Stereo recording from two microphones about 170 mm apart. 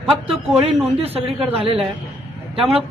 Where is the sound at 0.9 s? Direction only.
35° right (ahead or behind).